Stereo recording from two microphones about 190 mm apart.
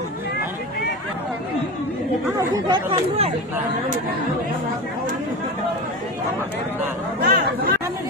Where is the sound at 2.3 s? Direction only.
20° right (ahead or behind).